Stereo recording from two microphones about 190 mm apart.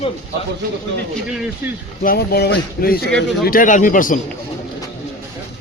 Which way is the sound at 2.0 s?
55° left (ahead or behind).